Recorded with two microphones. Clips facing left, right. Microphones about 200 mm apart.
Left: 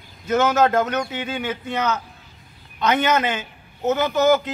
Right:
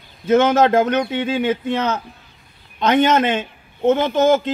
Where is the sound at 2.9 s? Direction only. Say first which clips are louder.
Right 5 dB; 55° right (ahead or behind).